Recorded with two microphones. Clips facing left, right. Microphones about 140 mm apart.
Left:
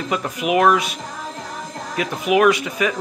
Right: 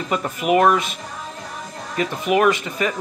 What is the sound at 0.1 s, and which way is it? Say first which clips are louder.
Speech: right 2 dB; centre (ahead or behind).